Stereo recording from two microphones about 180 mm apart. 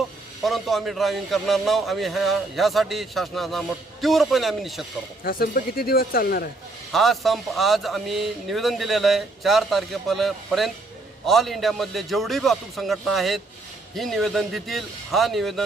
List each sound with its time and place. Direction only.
0.4 s a man's voice: centre (ahead or behind)
5.2 s speech: 55° left (ahead or behind)
6.9 s a man's voice: centre (ahead or behind)